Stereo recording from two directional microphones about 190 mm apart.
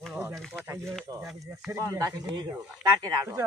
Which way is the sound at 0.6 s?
10° right (ahead or behind).